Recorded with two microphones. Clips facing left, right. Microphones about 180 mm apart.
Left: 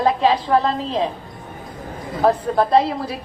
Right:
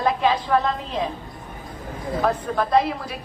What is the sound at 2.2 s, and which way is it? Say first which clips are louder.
Speech: left 6 dB; 30° left (ahead or behind).